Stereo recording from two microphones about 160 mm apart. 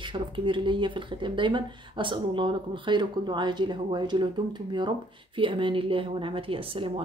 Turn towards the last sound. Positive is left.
turn(degrees=-35)  # may be behind; listen again after turning